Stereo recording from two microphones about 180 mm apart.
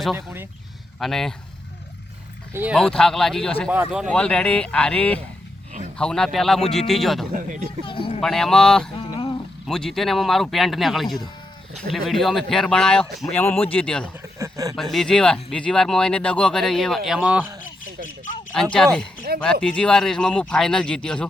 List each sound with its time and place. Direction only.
0.9 s speech: centre (ahead or behind)
2.5 s speech: 10° right (ahead or behind)
2.7 s speech: 5° left (ahead or behind)
7.3 s speech: 45° right (ahead or behind)
7.9 s speech: 30° left (ahead or behind)
8.2 s speech: 5° left (ahead or behind)
9.0 s a sound: 25° left (ahead or behind)
9.6 s speech: 5° left (ahead or behind)
14.3 s a sound: 15° right (ahead or behind)
14.8 s speech: centre (ahead or behind)
18.5 s speech: 5° left (ahead or behind)
19.3 s speech: 60° right (ahead or behind)
19.6 s speech: 5° left (ahead or behind)